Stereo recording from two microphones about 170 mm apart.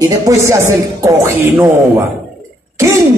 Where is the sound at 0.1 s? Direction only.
15° right (ahead or behind).